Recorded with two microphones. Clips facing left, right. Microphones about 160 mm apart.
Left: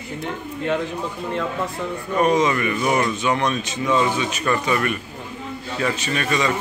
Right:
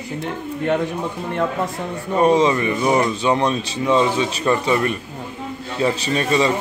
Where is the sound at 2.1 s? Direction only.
30° right (ahead or behind).